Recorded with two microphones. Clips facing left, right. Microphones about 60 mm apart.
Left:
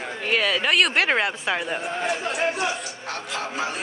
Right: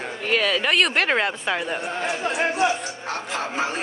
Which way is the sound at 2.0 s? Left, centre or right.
Right.